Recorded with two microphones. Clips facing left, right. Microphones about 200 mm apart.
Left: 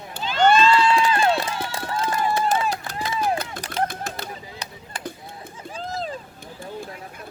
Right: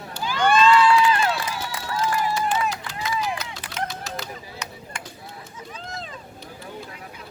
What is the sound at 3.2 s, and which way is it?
Run, 50° left (ahead or behind).